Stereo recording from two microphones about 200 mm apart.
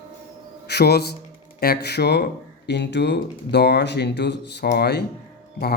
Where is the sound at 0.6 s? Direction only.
55° left (ahead or behind).